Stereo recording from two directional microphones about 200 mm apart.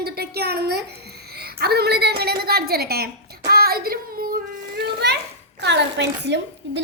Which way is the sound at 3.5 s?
50° right (ahead or behind).